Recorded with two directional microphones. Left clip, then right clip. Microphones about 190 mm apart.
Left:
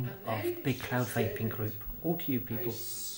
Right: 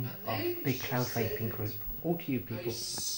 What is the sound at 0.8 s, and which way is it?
Speech, 10° left (ahead or behind).